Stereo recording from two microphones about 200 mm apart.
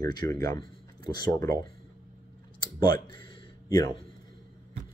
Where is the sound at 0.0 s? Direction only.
20° left (ahead or behind).